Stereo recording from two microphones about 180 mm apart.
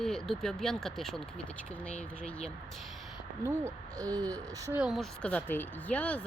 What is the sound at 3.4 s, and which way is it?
Speech, 15° right (ahead or behind).